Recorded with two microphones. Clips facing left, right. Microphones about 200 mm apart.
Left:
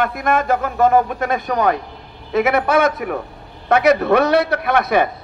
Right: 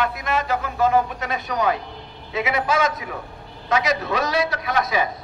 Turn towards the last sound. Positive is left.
turn(degrees=60)  # may be behind; listen again after turning